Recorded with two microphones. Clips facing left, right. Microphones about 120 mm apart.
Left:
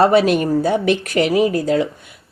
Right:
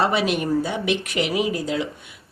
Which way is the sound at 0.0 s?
45° left (ahead or behind).